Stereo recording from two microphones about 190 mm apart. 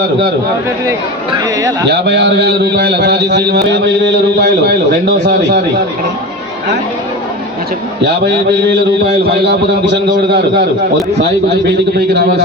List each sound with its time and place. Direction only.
0.9 s speech: 20° right (ahead or behind)
1.9 s a man's voice: 65° right (ahead or behind)
8.0 s a man's voice: 60° right (ahead or behind)